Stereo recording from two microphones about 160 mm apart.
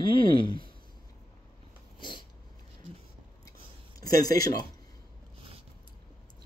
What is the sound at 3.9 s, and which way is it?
Speech, 20° left (ahead or behind).